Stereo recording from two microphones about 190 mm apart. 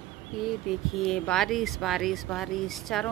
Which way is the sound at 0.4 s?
Centre (ahead or behind).